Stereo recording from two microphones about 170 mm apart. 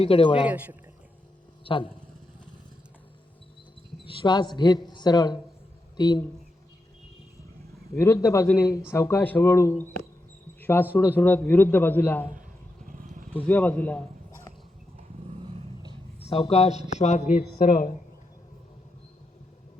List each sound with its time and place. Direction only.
0.0 s speech: 30° left (ahead or behind)
0.4 s speech: 10° right (ahead or behind)
1.6 s speech: 30° left (ahead or behind)
4.0 s a man's voice: 30° left (ahead or behind)
7.9 s a man's voice: 15° left (ahead or behind)
10.6 s cricket: 10° left (ahead or behind)
10.9 s a man's voice: 10° left (ahead or behind)
12.8 s vehicle: 50° right (ahead or behind)
13.3 s a man's voice: 10° left (ahead or behind)
15.3 s vehicle: 35° right (ahead or behind)
16.3 s speech: 35° left (ahead or behind); by 17.9 s 50° left (ahead or behind)